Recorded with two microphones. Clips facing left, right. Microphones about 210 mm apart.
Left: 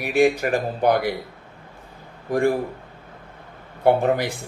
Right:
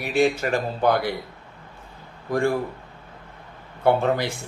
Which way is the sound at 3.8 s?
15° left (ahead or behind).